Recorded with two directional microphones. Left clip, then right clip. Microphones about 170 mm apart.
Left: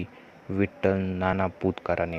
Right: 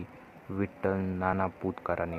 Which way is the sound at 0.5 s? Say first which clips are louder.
Left 6 dB; 30° left (ahead or behind).